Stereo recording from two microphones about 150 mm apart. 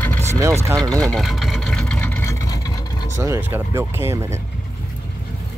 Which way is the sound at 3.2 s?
15° right (ahead or behind).